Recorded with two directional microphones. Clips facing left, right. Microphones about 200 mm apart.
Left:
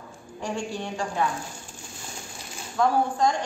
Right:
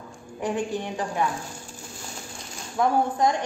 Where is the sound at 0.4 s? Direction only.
20° right (ahead or behind).